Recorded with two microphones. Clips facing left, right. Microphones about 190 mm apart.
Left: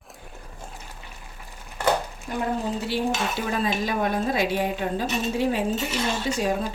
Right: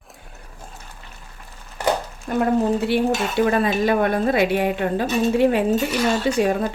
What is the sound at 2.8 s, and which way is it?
Dishes, 60° right (ahead or behind).